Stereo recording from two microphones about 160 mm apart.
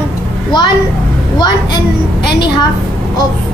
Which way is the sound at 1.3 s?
30° left (ahead or behind).